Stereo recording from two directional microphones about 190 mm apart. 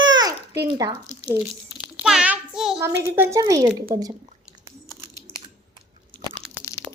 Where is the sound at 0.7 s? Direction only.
20° right (ahead or behind).